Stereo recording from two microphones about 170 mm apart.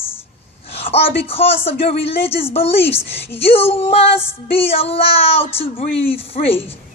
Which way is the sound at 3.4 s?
35° left (ahead or behind).